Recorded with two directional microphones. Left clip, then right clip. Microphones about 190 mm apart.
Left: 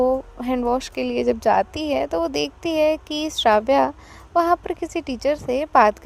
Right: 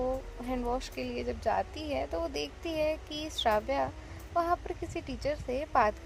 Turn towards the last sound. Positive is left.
turn(degrees=55)  # may be behind; listen again after turning